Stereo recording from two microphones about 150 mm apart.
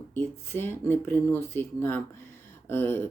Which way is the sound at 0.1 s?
15° left (ahead or behind).